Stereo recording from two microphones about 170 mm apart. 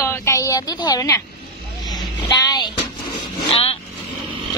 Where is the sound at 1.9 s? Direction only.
25° left (ahead or behind).